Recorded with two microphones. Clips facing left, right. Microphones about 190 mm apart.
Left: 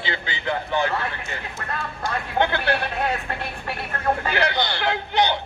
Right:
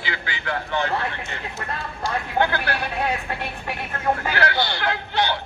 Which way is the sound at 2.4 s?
25° left (ahead or behind).